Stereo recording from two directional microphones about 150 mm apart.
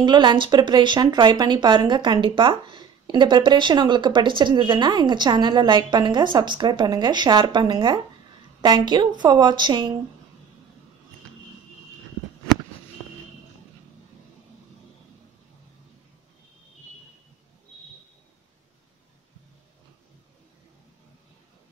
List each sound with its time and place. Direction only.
0.0 s a woman's voice: 30° right (ahead or behind)